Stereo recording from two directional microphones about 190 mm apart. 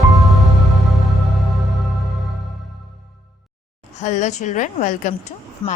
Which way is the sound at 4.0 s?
40° left (ahead or behind).